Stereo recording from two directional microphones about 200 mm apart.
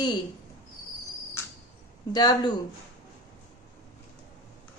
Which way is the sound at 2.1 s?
20° left (ahead or behind).